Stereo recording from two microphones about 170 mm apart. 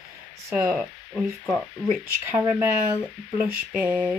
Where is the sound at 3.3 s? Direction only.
10° right (ahead or behind).